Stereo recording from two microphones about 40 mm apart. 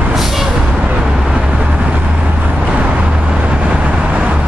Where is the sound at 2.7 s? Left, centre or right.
Right.